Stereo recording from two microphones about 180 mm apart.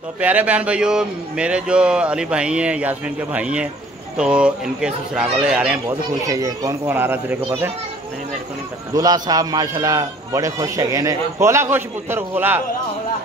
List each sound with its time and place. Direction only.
0.2 s a man's voice: 10° right (ahead or behind)
5.9 s a man's voice: 20° right (ahead or behind)
8.9 s a man's voice: 20° right (ahead or behind)